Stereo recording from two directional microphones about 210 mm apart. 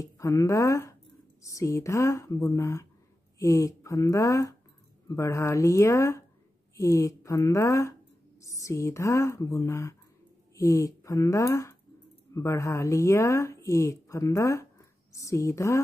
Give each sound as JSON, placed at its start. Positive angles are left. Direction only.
{"t": 0.0, "sound": "speech", "side_deg": 15}